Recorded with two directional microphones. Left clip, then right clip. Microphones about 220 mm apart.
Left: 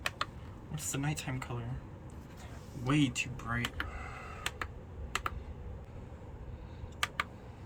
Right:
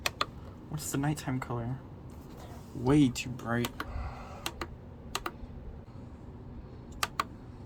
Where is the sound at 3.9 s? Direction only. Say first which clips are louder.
Even; 10° right (ahead or behind).